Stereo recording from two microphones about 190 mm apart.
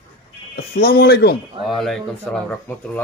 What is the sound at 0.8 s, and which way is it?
Speech, 55° left (ahead or behind).